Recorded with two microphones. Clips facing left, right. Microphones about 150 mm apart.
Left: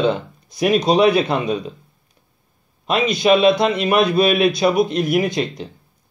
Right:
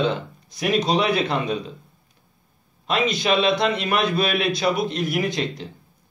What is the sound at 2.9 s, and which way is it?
A man's voice, 15° left (ahead or behind).